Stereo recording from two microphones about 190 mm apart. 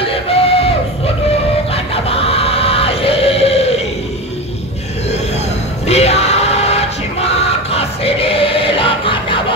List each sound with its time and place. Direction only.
0.0 s a sound: 30° left (ahead or behind)
1.7 s music: 30° left (ahead or behind)
5.9 s music: 35° left (ahead or behind)